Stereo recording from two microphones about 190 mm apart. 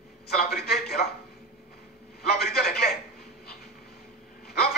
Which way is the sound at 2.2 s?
55° left (ahead or behind).